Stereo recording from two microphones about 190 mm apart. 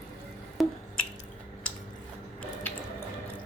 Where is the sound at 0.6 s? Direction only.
Centre (ahead or behind).